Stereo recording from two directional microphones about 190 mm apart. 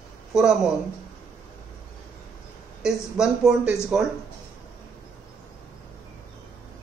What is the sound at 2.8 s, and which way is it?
Speech, centre (ahead or behind).